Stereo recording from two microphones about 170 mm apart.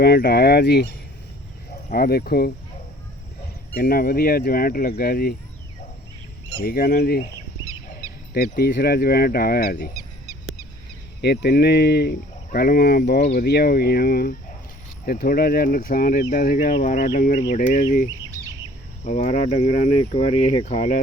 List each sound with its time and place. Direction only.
0.0 s speech: 75° left (ahead or behind)
1.9 s speech: 65° left (ahead or behind)
3.8 s speech: 60° left (ahead or behind)
6.6 s speech: 60° left (ahead or behind)
8.3 s speech: 65° left (ahead or behind)
11.2 s speech: 75° left (ahead or behind); by 17.8 s 50° left (ahead or behind)
19.0 s speech: 45° left (ahead or behind)